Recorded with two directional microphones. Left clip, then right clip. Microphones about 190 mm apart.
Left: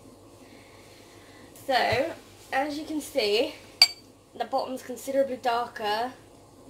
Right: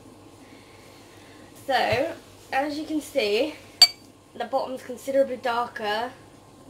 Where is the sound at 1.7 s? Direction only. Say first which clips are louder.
Right 1 dB; 10° left (ahead or behind).